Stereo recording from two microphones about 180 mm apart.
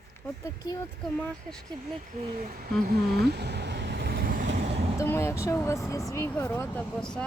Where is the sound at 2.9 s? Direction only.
65° right (ahead or behind).